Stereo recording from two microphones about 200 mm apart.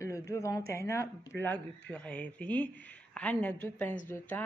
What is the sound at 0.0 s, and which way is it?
Speech, 15° left (ahead or behind).